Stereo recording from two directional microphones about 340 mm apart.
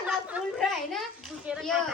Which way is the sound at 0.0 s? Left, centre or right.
Centre.